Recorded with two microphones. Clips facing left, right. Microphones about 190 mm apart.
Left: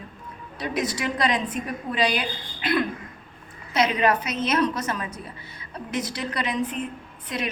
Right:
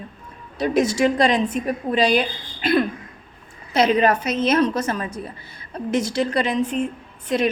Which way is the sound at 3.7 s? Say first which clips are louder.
Right 4 dB; 30° right (ahead or behind).